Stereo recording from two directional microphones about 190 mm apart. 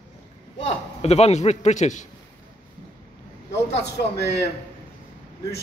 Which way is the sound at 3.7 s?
60° left (ahead or behind).